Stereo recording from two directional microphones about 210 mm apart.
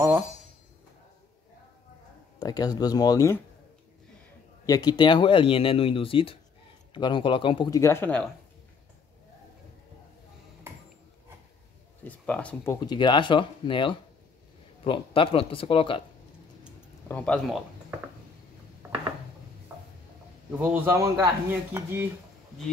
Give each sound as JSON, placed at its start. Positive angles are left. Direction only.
{"t": 2.3, "sound": "speech", "side_deg": 20}
{"t": 4.6, "sound": "speech", "side_deg": 20}
{"t": 12.0, "sound": "speech", "side_deg": 5}
{"t": 12.8, "sound": "speech", "side_deg": 20}
{"t": 17.1, "sound": "speech", "side_deg": 5}
{"t": 20.5, "sound": "speech", "side_deg": -10}